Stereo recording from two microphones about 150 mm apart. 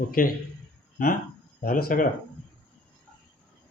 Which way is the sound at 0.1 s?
70° left (ahead or behind).